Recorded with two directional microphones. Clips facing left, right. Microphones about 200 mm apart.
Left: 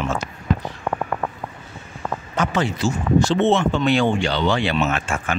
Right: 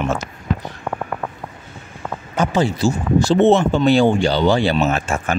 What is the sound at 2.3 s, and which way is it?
Speech, 30° right (ahead or behind).